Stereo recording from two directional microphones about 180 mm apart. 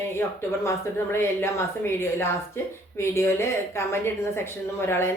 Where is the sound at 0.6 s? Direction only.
15° left (ahead or behind).